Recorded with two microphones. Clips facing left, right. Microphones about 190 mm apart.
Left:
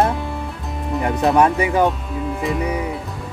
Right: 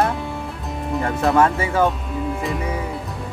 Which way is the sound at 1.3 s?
15° left (ahead or behind).